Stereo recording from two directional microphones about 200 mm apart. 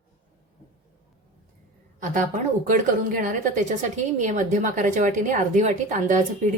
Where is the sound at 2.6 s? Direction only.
40° right (ahead or behind).